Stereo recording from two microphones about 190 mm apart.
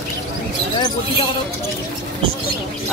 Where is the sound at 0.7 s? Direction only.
25° left (ahead or behind).